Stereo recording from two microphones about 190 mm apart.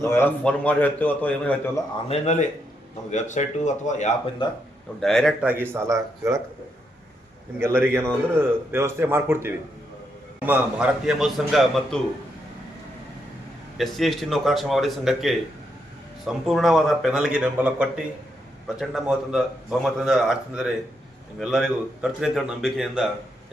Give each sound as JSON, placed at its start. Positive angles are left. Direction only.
{"t": 0.0, "sound": "a man's voice", "side_deg": 15}
{"t": 2.0, "sound": "speech", "side_deg": 35}
{"t": 4.9, "sound": "a man's voice", "side_deg": 0}
{"t": 7.6, "sound": "a man's voice", "side_deg": -10}
{"t": 13.7, "sound": "a man's voice", "side_deg": 0}